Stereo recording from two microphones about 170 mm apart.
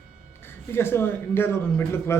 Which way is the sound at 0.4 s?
15° left (ahead or behind).